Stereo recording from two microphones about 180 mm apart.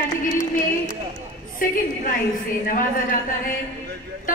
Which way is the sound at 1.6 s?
50° left (ahead or behind).